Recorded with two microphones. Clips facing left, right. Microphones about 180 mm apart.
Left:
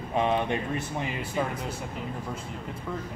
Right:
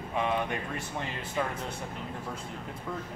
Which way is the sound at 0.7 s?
15° left (ahead or behind).